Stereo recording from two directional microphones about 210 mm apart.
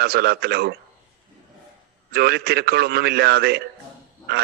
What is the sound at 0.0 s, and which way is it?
Speech, 50° right (ahead or behind).